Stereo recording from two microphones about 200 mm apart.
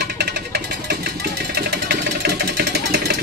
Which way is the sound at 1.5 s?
55° right (ahead or behind).